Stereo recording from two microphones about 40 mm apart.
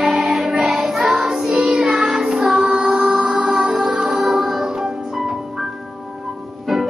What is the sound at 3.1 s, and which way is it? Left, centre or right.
Music, right.